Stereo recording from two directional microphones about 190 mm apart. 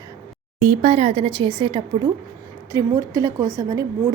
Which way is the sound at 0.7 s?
35° right (ahead or behind).